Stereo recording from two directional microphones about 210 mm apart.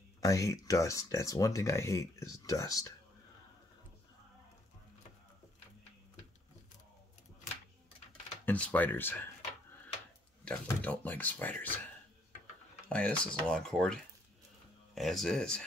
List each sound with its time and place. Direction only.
0.2 s speech: 15° left (ahead or behind)
8.5 s speech: 5° left (ahead or behind)
12.9 s speech: 5° left (ahead or behind)
15.0 s speech: centre (ahead or behind)